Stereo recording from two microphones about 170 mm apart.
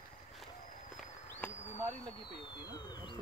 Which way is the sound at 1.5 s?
40° left (ahead or behind).